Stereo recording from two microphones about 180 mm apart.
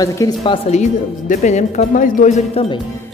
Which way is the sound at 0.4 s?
35° left (ahead or behind).